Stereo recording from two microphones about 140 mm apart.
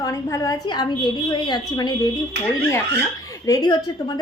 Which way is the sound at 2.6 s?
15° left (ahead or behind).